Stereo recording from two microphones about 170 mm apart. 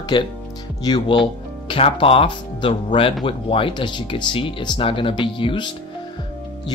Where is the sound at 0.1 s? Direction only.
25° left (ahead or behind).